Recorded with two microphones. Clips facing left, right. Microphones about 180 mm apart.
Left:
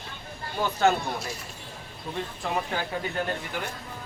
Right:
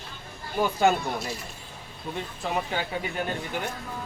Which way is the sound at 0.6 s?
10° right (ahead or behind).